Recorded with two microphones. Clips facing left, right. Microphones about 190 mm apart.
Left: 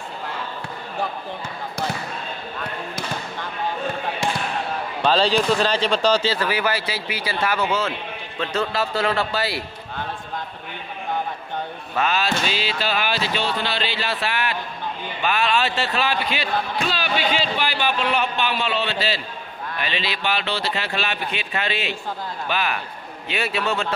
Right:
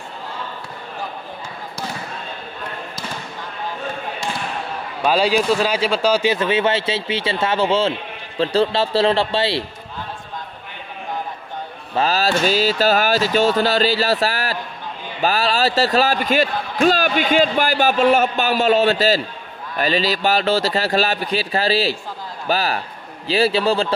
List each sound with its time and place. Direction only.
5.0 s speech: 10° right (ahead or behind); by 9.7 s 25° right (ahead or behind)
11.9 s a man's voice: 35° right (ahead or behind)